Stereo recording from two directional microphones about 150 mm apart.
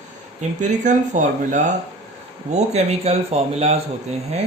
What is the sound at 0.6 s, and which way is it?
Speech, 55° right (ahead or behind).